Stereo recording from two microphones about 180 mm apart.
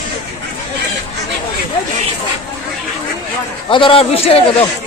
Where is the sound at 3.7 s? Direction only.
30° left (ahead or behind).